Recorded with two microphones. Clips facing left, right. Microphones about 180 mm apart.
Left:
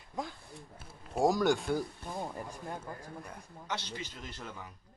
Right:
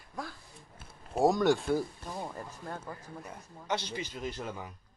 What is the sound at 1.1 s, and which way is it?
Speech, centre (ahead or behind).